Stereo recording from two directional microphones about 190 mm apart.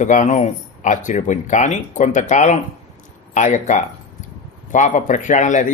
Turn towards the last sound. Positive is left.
turn(degrees=40)  # may be behind; listen again after turning